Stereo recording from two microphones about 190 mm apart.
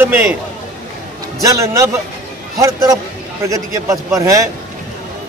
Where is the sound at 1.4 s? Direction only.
15° right (ahead or behind).